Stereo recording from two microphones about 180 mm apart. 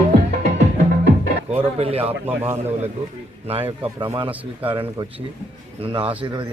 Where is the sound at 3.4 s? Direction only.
35° right (ahead or behind).